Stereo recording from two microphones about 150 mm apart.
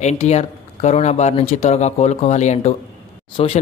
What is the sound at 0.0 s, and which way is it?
Speech, 45° left (ahead or behind).